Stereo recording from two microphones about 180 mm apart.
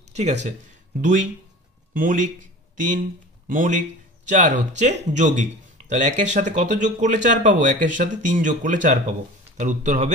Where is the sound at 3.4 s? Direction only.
45° right (ahead or behind).